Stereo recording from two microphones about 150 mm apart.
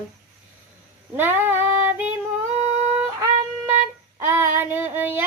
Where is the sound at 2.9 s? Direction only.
15° right (ahead or behind).